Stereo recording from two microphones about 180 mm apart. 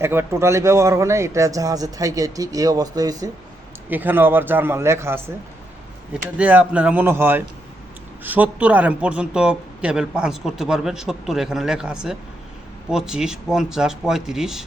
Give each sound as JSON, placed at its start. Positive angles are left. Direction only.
{"t": 0.0, "sound": "a man's voice", "side_deg": -15}
{"t": 3.8, "sound": "speech", "side_deg": -10}
{"t": 6.3, "sound": "speech", "side_deg": -10}